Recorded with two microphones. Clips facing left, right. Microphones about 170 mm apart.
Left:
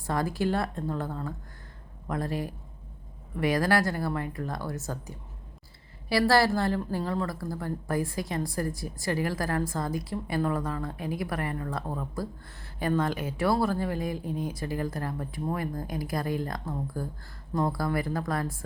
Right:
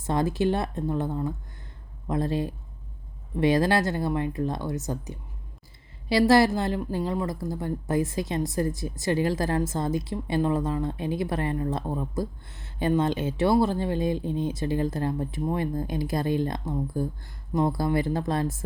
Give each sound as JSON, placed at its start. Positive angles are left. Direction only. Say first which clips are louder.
{"t": 0.0, "sound": "a woman's voice", "louder": "right 4 dB", "side_deg": -20}